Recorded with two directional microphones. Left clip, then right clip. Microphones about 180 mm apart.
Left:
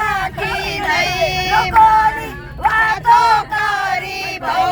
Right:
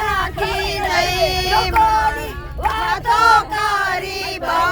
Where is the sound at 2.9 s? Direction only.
30° right (ahead or behind).